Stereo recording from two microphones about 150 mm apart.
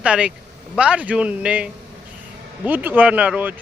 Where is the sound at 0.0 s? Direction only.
10° right (ahead or behind).